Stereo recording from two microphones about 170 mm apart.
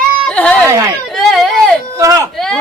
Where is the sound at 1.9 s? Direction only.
15° right (ahead or behind).